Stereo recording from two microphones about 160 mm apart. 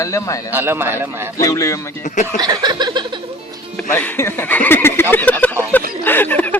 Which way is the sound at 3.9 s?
10° left (ahead or behind).